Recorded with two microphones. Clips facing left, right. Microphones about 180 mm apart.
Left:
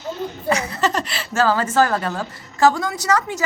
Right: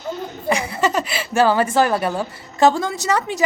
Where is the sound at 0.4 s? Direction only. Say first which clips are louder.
Right 1 dB; 15° right (ahead or behind).